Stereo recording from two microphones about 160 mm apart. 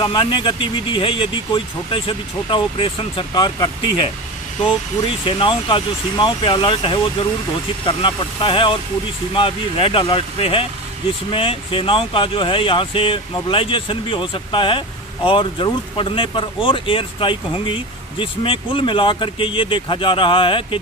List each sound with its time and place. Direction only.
0.0 s speech: 30° left (ahead or behind)
5.2 s speech: 30° left (ahead or behind)